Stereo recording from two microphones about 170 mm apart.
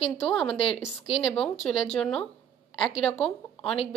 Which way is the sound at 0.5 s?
35° left (ahead or behind).